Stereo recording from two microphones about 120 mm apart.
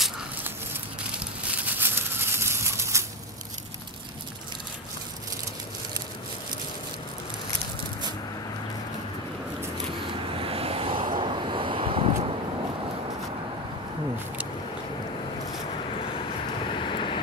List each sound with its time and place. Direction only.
1.1 s a sound: 15° right (ahead or behind)
10.3 s vehicle: 50° right (ahead or behind)
16.7 s vehicle: 45° left (ahead or behind)